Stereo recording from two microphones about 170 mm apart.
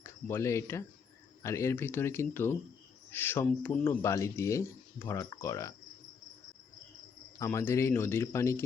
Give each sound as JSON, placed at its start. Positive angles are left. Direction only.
{"t": 0.0, "sound": "speech", "side_deg": 15}
{"t": 7.3, "sound": "speech", "side_deg": 15}